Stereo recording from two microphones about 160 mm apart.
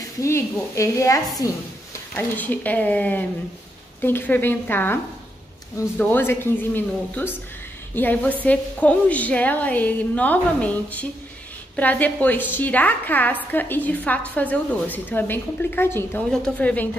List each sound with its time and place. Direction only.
0.2 s a woman's voice: 20° left (ahead or behind)
5.9 s a woman's voice: 15° left (ahead or behind)